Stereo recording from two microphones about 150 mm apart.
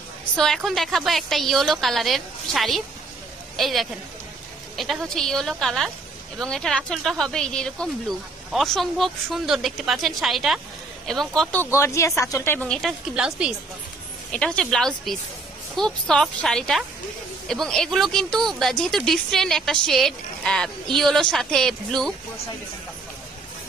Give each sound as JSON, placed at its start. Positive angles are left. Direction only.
{"t": 0.7, "sound": "speech", "side_deg": 0}
{"t": 11.7, "sound": "speech", "side_deg": 20}
{"t": 12.6, "sound": "speech", "side_deg": 0}
{"t": 14.3, "sound": "speech", "side_deg": 5}